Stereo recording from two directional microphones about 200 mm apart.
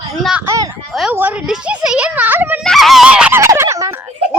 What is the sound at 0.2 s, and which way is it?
Speech, centre (ahead or behind).